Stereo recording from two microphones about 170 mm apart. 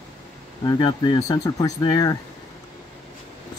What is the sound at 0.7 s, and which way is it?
Speech, 25° left (ahead or behind).